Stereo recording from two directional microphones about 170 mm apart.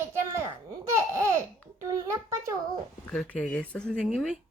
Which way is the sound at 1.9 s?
20° right (ahead or behind).